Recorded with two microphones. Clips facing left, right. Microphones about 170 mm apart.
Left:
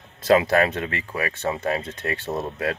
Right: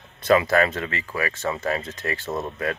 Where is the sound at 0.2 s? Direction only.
90° left.